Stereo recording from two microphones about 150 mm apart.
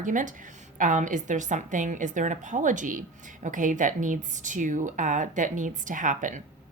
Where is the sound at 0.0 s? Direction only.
60° right (ahead or behind).